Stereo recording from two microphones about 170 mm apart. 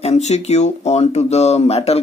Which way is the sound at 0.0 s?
40° left (ahead or behind).